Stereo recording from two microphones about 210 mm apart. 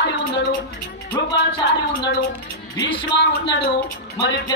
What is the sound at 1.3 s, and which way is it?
Speech, 20° left (ahead or behind).